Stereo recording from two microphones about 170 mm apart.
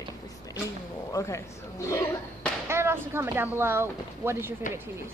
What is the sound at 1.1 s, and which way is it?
Speech, 20° left (ahead or behind).